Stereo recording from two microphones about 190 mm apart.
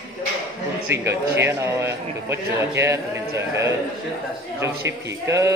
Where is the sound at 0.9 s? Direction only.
15° right (ahead or behind).